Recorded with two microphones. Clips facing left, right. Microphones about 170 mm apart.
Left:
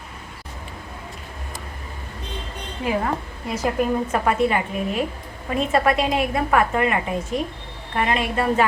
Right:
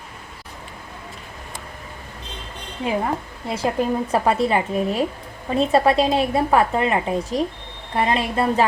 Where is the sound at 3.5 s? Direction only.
30° right (ahead or behind).